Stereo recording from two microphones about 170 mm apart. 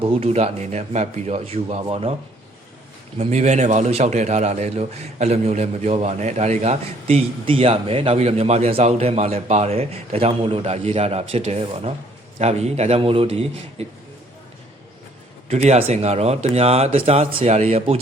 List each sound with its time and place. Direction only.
0.0 s a man's voice: 35° right (ahead or behind)
3.2 s a man's voice: 40° right (ahead or behind)
15.4 s a man's voice: 40° right (ahead or behind)